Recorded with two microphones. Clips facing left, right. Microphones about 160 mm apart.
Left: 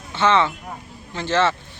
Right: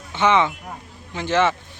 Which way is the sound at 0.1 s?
15° right (ahead or behind).